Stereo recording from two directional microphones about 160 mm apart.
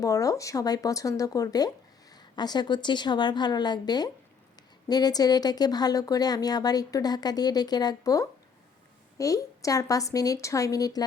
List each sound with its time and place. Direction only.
0.0 s speech: 20° left (ahead or behind)